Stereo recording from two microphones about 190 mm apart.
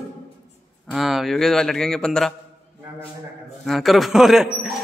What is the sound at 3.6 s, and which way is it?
A man's voice, centre (ahead or behind).